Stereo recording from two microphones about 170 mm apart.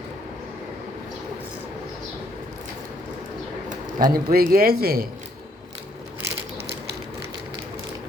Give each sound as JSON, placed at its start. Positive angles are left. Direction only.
{"t": 3.8, "sound": "a man's voice", "side_deg": -50}